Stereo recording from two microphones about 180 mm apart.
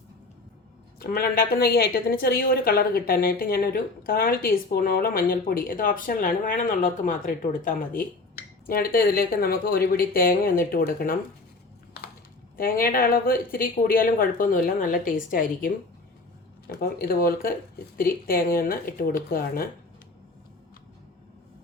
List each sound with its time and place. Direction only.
0.9 s a woman's voice: 60° left (ahead or behind)
12.5 s a woman's voice: 50° left (ahead or behind)